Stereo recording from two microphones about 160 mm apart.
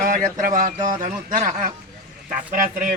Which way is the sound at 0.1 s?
55° right (ahead or behind).